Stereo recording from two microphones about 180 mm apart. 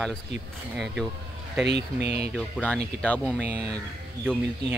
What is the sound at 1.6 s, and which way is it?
Speech, 65° right (ahead or behind).